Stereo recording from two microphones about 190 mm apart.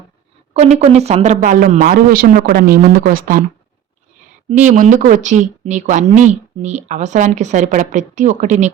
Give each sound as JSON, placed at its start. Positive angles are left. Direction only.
{"t": 0.5, "sound": "speech", "side_deg": -35}
{"t": 4.4, "sound": "speech", "side_deg": -40}